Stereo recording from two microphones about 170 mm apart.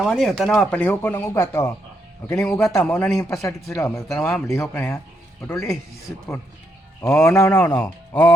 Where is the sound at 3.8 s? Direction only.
20° left (ahead or behind).